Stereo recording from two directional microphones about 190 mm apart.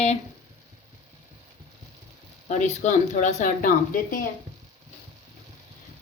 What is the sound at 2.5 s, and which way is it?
A woman's voice, 40° left (ahead or behind).